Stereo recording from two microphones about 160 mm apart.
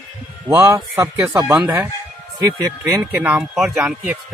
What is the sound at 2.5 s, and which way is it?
Speech, 20° right (ahead or behind).